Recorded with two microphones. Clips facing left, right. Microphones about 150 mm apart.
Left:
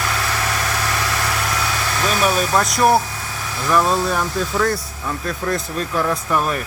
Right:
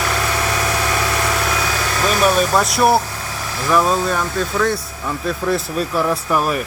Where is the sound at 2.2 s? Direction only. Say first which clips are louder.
Right 3 dB; centre (ahead or behind).